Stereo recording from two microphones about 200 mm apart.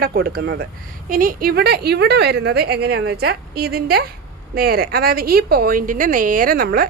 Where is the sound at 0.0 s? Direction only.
50° right (ahead or behind).